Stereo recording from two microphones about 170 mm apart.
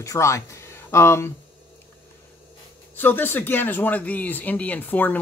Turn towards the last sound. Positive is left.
turn(degrees=10)  # may be behind; listen again after turning